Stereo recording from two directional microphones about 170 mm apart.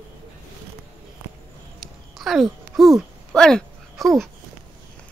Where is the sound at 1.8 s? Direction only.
Centre (ahead or behind).